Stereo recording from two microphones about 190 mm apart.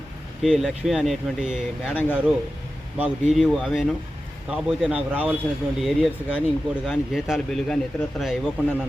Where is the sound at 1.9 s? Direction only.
10° left (ahead or behind).